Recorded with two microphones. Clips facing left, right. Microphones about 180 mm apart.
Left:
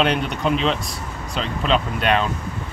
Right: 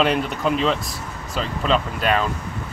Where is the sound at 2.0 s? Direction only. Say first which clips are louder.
Left 1 dB; 5° right (ahead or behind).